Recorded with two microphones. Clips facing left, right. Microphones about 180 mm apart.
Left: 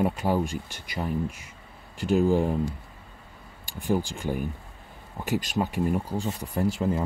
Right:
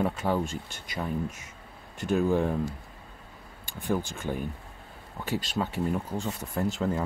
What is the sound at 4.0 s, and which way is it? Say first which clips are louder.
Speech: left 3 dB; 10° left (ahead or behind).